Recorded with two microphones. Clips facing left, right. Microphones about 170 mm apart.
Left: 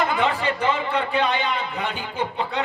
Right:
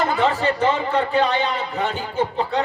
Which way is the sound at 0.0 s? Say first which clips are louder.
Right 3 dB; 40° right (ahead or behind).